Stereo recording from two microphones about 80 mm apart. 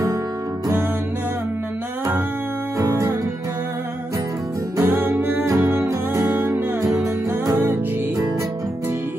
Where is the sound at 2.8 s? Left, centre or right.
Right.